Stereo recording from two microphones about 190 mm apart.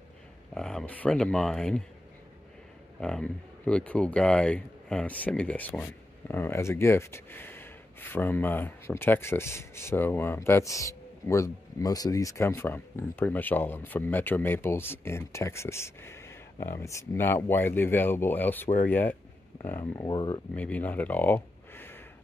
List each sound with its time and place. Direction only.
0.6 s speech: 5° left (ahead or behind)
3.0 s speech: 5° left (ahead or behind); by 20.3 s 20° left (ahead or behind)
20.5 s speech: 5° left (ahead or behind)